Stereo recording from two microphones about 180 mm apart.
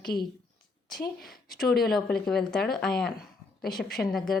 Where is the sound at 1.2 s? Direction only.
Centre (ahead or behind).